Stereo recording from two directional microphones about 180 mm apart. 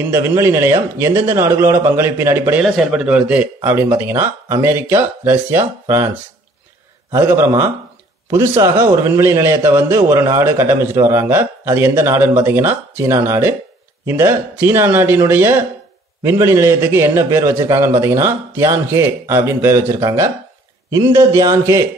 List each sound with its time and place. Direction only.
0.0 s a man's voice: 15° right (ahead or behind)
2.6 s a man's voice: centre (ahead or behind)
7.1 s a man's voice: 15° right (ahead or behind)